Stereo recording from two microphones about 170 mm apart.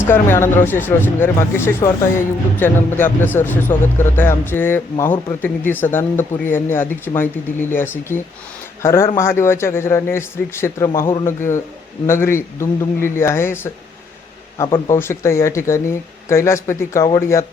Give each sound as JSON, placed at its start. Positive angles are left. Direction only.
{"t": 0.1, "sound": "speech", "side_deg": 15}
{"t": 14.8, "sound": "speech", "side_deg": 15}